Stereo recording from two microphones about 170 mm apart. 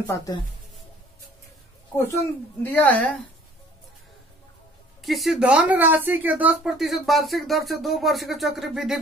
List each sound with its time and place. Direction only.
0.0 s speech: 20° left (ahead or behind)
2.6 s a woman's voice: 10° left (ahead or behind)
5.0 s speech: centre (ahead or behind)